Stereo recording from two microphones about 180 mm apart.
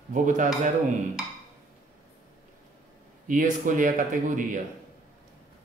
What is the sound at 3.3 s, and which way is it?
Speech, 45° right (ahead or behind).